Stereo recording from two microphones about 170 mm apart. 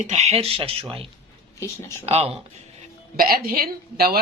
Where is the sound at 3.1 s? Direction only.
60° right (ahead or behind).